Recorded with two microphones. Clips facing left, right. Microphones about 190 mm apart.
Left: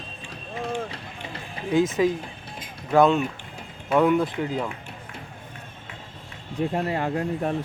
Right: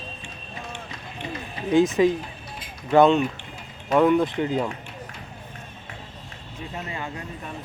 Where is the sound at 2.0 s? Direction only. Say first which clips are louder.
Right 3 dB; centre (ahead or behind).